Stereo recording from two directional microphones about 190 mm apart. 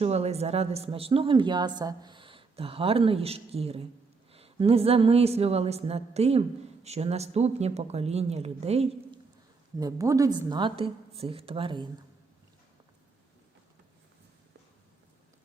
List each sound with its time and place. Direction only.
0.0 s a woman's voice: 35° right (ahead or behind)
9.8 s a woman's voice: 20° right (ahead or behind)